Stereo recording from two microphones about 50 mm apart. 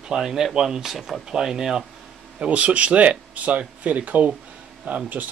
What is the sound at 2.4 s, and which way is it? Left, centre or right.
Speech, right.